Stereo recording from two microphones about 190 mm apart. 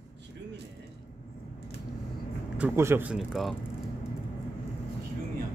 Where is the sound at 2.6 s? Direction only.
15° right (ahead or behind).